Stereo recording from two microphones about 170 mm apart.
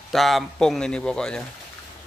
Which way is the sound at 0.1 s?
Centre (ahead or behind).